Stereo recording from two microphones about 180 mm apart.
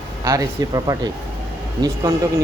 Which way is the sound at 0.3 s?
20° right (ahead or behind).